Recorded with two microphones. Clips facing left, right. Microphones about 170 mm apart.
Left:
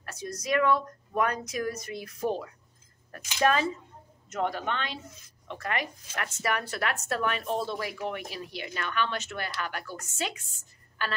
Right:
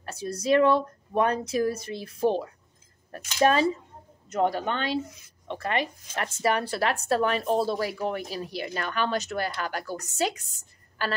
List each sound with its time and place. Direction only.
0.0 s a woman's voice: 30° right (ahead or behind)